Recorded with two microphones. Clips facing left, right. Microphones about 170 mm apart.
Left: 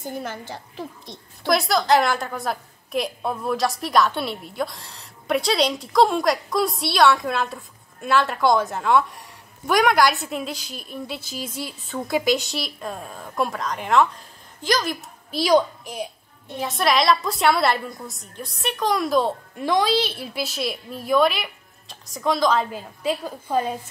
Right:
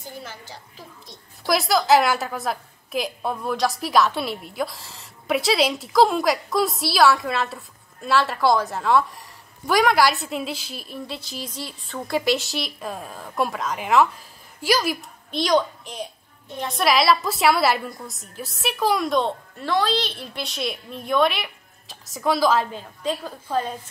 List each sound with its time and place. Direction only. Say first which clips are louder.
0.0 s a woman's voice: left 7 dB; 50° left (ahead or behind)
1.4 s a woman's voice: even; centre (ahead or behind)
15.0 s a woman's voice: even; 5° left (ahead or behind)
22.7 s a woman's voice: left 2 dB; 5° left (ahead or behind)